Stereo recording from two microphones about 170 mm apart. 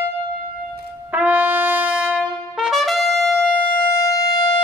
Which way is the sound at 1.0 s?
10° right (ahead or behind).